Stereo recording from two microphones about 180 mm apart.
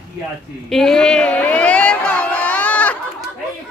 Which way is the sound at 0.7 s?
Centre (ahead or behind).